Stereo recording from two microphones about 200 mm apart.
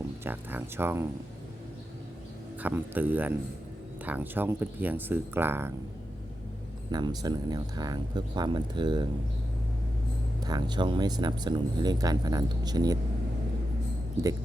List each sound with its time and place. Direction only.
0.3 s speech: 10° right (ahead or behind)
2.6 s speech: 10° right (ahead or behind)
6.9 s speech: 20° right (ahead or behind)
10.4 s speech: 20° right (ahead or behind)